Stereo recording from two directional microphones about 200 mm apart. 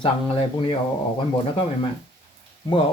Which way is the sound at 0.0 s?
25° left (ahead or behind).